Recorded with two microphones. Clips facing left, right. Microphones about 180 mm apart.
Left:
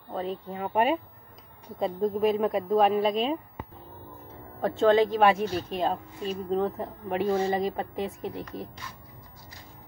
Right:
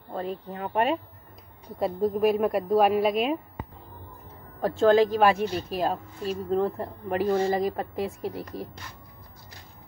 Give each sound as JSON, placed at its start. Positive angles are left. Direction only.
{"t": 0.1, "sound": "speech", "side_deg": 0}
{"t": 1.8, "sound": "speech", "side_deg": -5}
{"t": 4.6, "sound": "speech", "side_deg": 0}